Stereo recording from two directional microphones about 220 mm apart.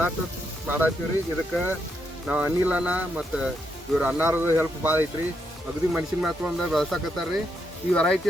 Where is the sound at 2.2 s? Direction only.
5° right (ahead or behind).